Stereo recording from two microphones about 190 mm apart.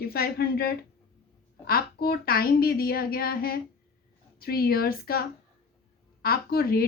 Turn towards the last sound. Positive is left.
turn(degrees=55)  # may be behind; listen again after turning